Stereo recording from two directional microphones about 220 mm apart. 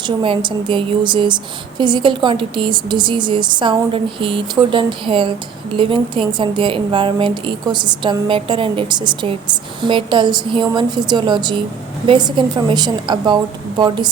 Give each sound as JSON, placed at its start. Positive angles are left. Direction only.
{"t": 0.0, "sound": "a woman's voice", "side_deg": -20}